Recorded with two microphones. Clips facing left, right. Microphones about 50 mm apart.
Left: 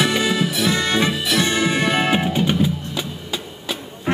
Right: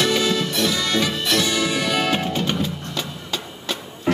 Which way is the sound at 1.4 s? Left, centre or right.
Left.